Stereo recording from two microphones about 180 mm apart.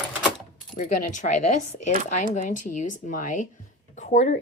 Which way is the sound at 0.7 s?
45° left (ahead or behind).